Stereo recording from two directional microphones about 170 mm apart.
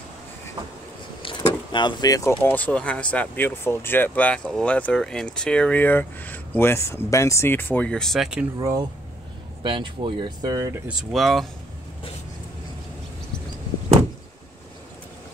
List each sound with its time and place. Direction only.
1.2 s speech: 30° left (ahead or behind); by 8.5 s 5° right (ahead or behind)
8.5 s speech: 20° right (ahead or behind)
10.9 s speech: 5° right (ahead or behind)